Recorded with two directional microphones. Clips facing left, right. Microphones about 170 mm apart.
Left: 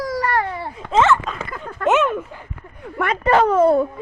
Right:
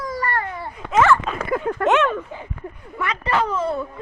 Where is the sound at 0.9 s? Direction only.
20° left (ahead or behind).